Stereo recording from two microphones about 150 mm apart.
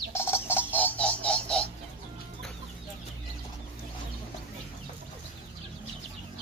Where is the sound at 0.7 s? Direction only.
10° left (ahead or behind).